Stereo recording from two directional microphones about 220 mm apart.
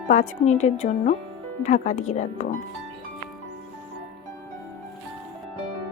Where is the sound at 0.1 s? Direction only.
30° left (ahead or behind).